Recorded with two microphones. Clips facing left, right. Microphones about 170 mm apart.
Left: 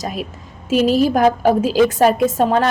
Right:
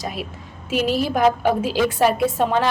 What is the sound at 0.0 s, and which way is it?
A woman's voice, 45° left (ahead or behind).